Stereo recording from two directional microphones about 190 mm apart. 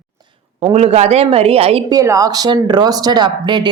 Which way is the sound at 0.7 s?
35° right (ahead or behind).